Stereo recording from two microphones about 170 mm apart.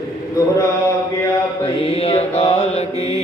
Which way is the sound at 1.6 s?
35° left (ahead or behind).